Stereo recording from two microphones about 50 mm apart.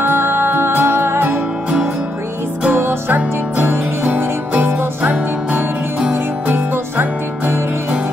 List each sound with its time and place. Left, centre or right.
0.0 s music: right
2.7 s music: right
3.1 s music: right
5.1 s music: right
6.4 s music: right